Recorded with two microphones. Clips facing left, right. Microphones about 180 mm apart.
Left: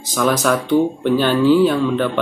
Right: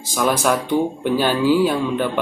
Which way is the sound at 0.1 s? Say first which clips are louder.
Left 2 dB; 10° right (ahead or behind).